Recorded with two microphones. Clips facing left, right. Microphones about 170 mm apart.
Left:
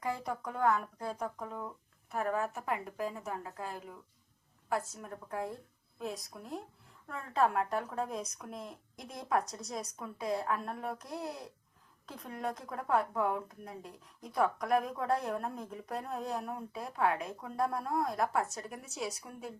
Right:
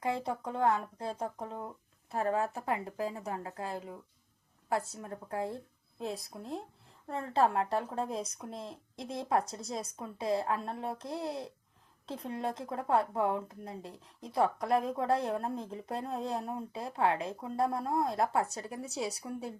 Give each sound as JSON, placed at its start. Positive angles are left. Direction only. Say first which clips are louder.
{"t": 0.0, "sound": "speech", "louder": "right 3 dB", "side_deg": -25}